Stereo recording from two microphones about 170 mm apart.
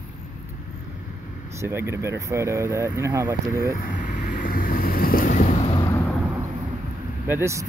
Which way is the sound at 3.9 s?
50° left (ahead or behind).